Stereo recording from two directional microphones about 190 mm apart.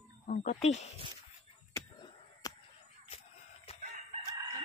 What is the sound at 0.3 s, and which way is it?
Speech, 40° left (ahead or behind).